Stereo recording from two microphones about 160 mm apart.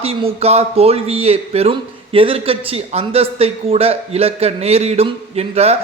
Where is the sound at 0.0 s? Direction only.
35° right (ahead or behind).